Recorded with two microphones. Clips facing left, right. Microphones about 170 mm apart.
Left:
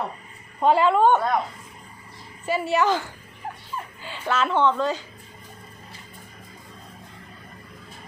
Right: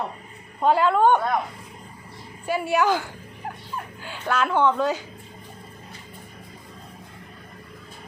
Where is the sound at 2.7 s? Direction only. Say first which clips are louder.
Right 1 dB; centre (ahead or behind).